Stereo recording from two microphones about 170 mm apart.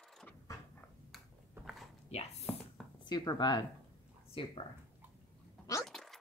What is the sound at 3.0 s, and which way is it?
Speech, 25° left (ahead or behind).